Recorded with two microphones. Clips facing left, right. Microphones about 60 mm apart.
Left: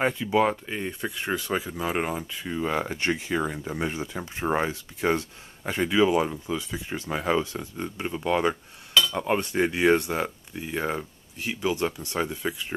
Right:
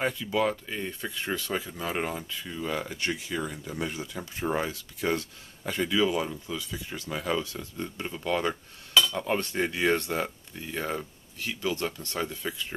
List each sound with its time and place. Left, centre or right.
0.0 s speech: left